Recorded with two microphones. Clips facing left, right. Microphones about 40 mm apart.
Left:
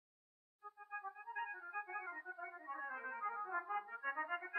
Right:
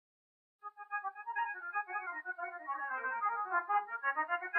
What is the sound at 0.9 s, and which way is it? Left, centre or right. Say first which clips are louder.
Music: right 8 dB; right.